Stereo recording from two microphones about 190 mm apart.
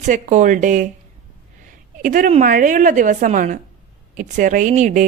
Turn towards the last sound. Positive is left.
turn(degrees=-40)  # may be behind; listen again after turning